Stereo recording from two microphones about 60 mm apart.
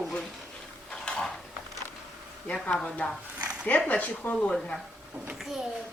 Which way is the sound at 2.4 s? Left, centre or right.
Centre.